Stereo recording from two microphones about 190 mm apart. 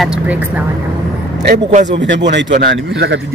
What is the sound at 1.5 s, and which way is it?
Speech, 40° right (ahead or behind).